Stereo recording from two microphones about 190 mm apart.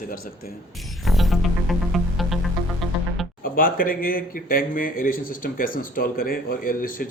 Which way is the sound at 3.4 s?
50° left (ahead or behind).